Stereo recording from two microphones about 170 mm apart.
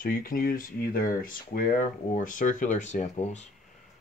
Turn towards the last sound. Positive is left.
turn(degrees=40)  # may be behind; listen again after turning